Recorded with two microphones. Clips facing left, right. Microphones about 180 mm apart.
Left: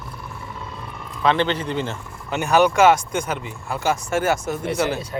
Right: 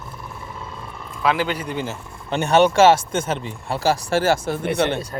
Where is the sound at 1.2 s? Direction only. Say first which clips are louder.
Left 2 dB; 5° right (ahead or behind).